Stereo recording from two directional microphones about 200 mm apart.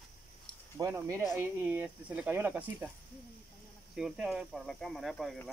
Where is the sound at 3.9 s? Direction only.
5° right (ahead or behind).